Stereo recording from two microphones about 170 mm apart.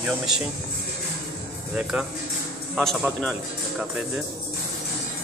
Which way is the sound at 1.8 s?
5° right (ahead or behind).